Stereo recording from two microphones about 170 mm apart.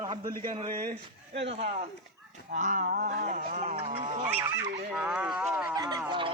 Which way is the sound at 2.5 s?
50° right (ahead or behind).